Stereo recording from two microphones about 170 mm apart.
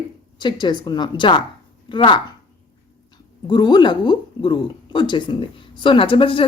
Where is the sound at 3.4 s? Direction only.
25° left (ahead or behind).